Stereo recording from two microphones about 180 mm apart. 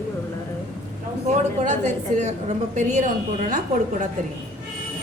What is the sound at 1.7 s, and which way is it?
A woman's voice, 40° right (ahead or behind).